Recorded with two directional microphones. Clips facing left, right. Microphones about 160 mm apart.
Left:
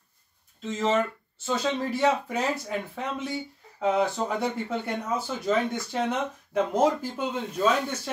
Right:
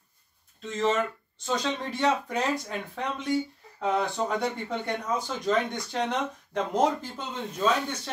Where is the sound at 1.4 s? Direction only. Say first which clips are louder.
Left 2 dB; 5° left (ahead or behind).